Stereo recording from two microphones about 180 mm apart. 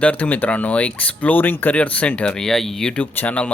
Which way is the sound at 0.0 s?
10° left (ahead or behind).